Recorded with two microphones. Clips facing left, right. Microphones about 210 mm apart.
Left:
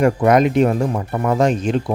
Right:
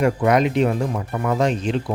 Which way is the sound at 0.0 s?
45° left (ahead or behind).